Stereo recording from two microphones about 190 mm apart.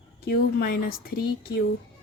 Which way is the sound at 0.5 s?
50° left (ahead or behind).